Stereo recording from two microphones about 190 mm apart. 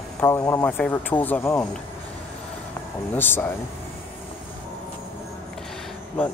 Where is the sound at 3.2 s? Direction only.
10° left (ahead or behind).